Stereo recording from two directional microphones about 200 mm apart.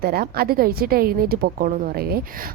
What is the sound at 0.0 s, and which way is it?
A woman's voice, 50° right (ahead or behind).